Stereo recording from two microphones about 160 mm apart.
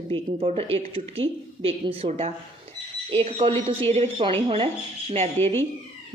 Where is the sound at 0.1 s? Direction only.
35° right (ahead or behind).